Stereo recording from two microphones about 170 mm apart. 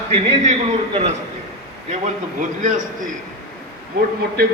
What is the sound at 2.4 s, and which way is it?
Speech, 50° right (ahead or behind).